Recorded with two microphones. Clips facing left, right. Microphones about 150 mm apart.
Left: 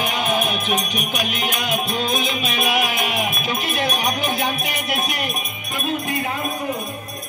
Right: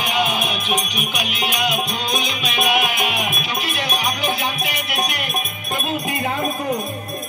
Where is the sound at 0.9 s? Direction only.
45° left (ahead or behind).